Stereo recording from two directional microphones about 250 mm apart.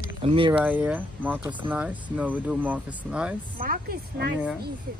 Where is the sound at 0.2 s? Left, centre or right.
Right.